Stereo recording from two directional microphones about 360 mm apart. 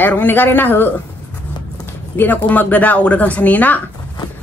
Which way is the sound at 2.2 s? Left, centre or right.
Centre.